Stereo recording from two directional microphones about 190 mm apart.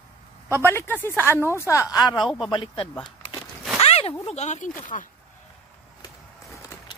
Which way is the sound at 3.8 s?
30° left (ahead or behind).